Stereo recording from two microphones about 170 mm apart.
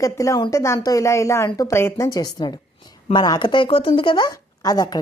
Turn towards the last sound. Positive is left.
turn(degrees=20)  # may be behind; listen again after turning